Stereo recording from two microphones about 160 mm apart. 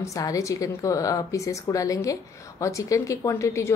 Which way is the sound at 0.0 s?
20° left (ahead or behind).